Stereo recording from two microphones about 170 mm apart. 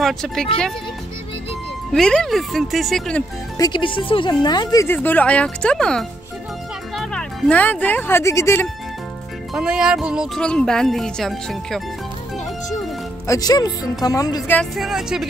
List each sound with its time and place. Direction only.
0.0 s speech: 5° left (ahead or behind)
1.9 s speech: 5° left (ahead or behind)
3.5 s speech: 25° left (ahead or behind)
4.8 s speech: 10° left (ahead or behind)
9.5 s speech: 5° right (ahead or behind)
13.3 s speech: 20° left (ahead or behind)
14.5 s speech: centre (ahead or behind)